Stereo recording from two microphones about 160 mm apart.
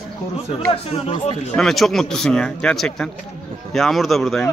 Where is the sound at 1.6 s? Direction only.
Centre (ahead or behind).